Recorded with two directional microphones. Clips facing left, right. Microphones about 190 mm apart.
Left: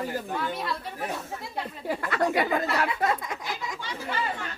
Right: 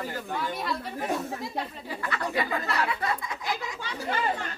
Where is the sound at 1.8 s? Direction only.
55° left (ahead or behind).